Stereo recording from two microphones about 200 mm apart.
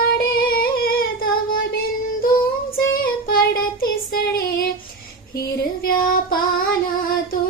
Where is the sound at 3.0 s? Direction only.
50° left (ahead or behind).